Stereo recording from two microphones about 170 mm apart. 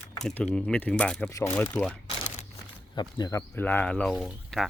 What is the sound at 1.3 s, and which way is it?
Speech, 20° left (ahead or behind).